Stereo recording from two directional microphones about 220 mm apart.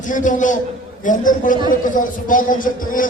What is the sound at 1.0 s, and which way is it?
A man's voice, 35° left (ahead or behind).